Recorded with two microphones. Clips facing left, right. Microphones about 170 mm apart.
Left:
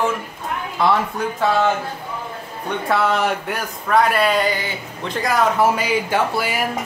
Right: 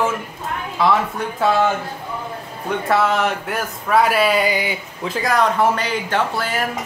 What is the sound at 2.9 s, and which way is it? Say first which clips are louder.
Speech: right 1 dB; centre (ahead or behind).